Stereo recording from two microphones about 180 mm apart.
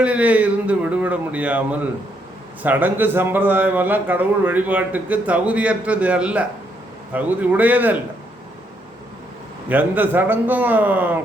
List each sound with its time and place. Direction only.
0.0 s a man's voice: 5° right (ahead or behind)
9.6 s a man's voice: 10° right (ahead or behind)